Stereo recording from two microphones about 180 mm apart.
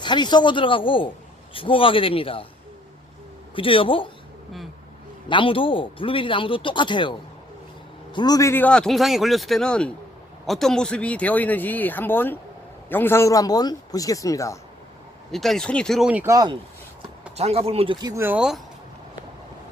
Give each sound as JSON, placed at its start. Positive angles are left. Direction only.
{"t": 0.0, "sound": "speech", "side_deg": 25}
{"t": 3.5, "sound": "speech", "side_deg": 30}
{"t": 5.3, "sound": "a man's voice", "side_deg": 30}
{"t": 15.3, "sound": "a man's voice", "side_deg": 0}
{"t": 17.3, "sound": "speech", "side_deg": -35}